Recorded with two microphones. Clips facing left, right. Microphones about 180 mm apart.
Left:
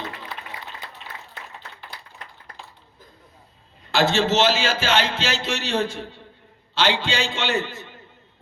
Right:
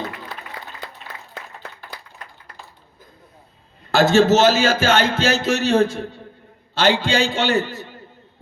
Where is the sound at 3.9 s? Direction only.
45° right (ahead or behind).